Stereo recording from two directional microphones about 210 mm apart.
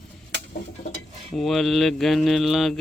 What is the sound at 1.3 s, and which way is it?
Speech, centre (ahead or behind).